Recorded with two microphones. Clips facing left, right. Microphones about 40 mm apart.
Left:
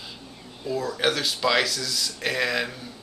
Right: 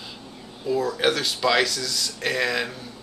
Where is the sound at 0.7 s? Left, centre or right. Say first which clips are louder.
Right 3 dB; centre.